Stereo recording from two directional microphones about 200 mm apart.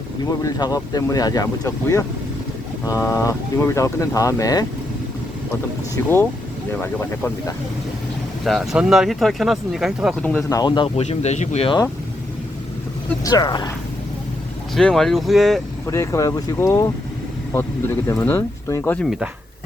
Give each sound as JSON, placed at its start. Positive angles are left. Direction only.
{"t": 0.3, "sound": "speech", "side_deg": 20}
{"t": 6.0, "sound": "speech", "side_deg": 15}
{"t": 8.4, "sound": "speech", "side_deg": 0}
{"t": 10.2, "sound": "speech", "side_deg": 10}
{"t": 10.6, "sound": "speech", "side_deg": 20}
{"t": 11.0, "sound": "speech", "side_deg": 35}
{"t": 13.2, "sound": "speech", "side_deg": 20}
{"t": 14.8, "sound": "speech", "side_deg": 5}
{"t": 15.9, "sound": "speech", "side_deg": 15}
{"t": 19.0, "sound": "speech", "side_deg": 0}